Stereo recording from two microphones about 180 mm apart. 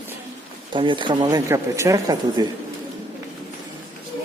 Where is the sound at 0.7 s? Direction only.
25° right (ahead or behind).